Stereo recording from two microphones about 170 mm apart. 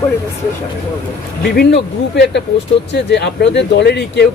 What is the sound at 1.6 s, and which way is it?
Speech, 85° left.